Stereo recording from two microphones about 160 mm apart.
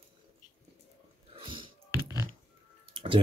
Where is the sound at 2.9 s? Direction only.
35° right (ahead or behind).